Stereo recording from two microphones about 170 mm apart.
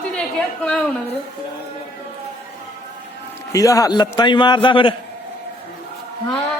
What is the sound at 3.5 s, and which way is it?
A man's voice, 20° left (ahead or behind).